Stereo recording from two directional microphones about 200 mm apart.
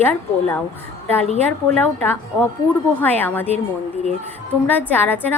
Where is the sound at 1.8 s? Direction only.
10° left (ahead or behind).